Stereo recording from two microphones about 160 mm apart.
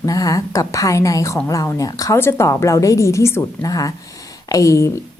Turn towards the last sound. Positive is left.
turn(degrees=20)  # may be behind; listen again after turning